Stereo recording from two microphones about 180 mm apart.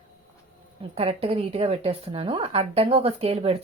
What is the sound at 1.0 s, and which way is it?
Speech, 35° right (ahead or behind).